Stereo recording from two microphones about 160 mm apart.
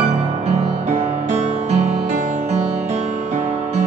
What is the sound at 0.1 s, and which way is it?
Music, 40° right (ahead or behind).